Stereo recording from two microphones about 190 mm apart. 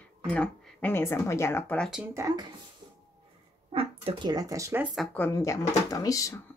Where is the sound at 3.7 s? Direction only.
25° right (ahead or behind).